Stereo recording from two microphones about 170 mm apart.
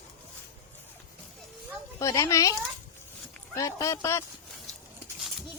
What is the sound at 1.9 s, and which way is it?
Speech, 20° left (ahead or behind).